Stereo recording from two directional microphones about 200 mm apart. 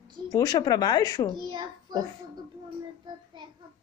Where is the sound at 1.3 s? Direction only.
20° right (ahead or behind).